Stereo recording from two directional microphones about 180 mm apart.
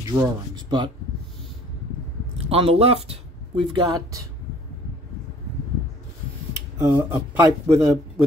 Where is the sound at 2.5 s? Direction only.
35° right (ahead or behind).